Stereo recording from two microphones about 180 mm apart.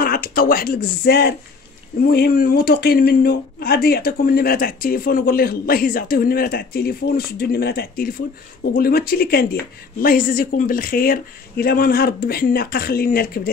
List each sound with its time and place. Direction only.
0.0 s speech: 55° left (ahead or behind)